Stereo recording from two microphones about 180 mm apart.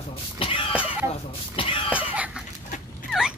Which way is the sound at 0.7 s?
5° right (ahead or behind).